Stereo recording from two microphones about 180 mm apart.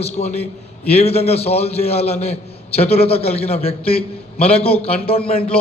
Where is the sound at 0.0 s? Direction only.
35° left (ahead or behind).